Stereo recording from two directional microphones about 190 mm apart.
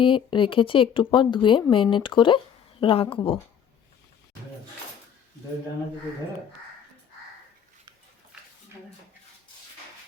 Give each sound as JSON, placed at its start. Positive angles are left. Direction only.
{"t": 0.0, "sound": "speech", "side_deg": 25}